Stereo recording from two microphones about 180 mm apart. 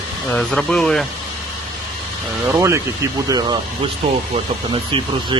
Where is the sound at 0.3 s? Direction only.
5° left (ahead or behind).